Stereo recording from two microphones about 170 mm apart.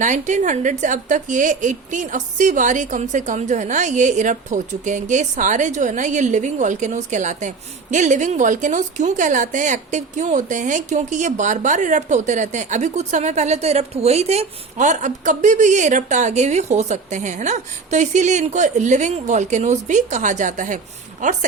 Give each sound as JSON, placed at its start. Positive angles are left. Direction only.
{"t": 0.0, "sound": "a woman's voice", "side_deg": -45}